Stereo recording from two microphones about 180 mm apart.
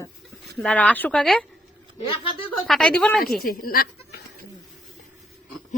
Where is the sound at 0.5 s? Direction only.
5° left (ahead or behind).